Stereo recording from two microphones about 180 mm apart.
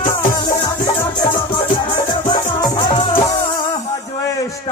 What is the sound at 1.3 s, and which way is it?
Music, 25° left (ahead or behind).